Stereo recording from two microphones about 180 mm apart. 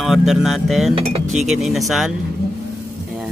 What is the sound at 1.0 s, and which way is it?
Speech, 35° right (ahead or behind).